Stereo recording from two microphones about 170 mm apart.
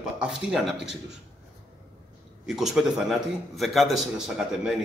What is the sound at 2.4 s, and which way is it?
A man's voice, centre (ahead or behind).